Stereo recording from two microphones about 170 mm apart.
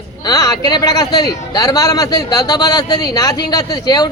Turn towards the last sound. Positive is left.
turn(degrees=25)  # may be behind; listen again after turning